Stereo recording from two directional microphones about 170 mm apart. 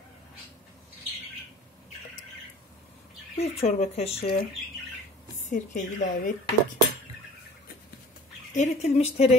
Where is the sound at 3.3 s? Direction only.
40° left (ahead or behind).